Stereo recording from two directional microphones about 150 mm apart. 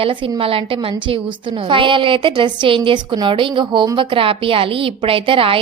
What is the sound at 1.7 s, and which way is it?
A woman's voice, 35° right (ahead or behind).